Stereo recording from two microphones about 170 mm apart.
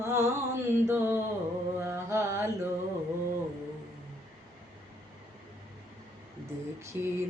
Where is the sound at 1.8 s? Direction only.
15° right (ahead or behind).